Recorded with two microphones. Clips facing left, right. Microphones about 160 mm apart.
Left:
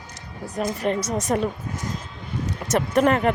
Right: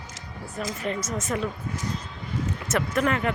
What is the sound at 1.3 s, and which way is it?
Speech, 40° left (ahead or behind).